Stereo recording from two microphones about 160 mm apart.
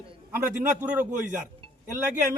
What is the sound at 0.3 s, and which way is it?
Speech, 10° right (ahead or behind).